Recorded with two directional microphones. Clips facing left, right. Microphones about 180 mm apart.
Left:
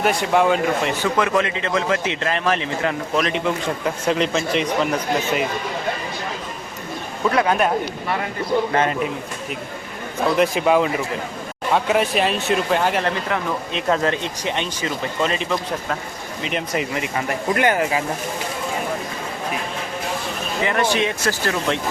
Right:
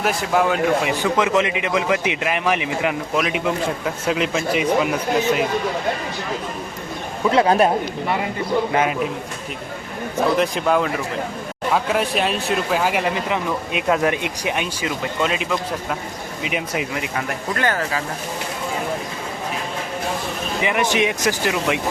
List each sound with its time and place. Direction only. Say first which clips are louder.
0.0 s speech: left 2 dB; centre (ahead or behind)
1.1 s a man's voice: right 3 dB; 20° right (ahead or behind)
7.3 s a man's voice: right 3 dB; 30° right (ahead or behind)
8.7 s a man's voice: even; 10° right (ahead or behind)
10.3 s speech: left 5 dB; centre (ahead or behind)
17.5 s speech: left 4 dB; 20° left (ahead or behind)
20.6 s a man's voice: even; 15° right (ahead or behind)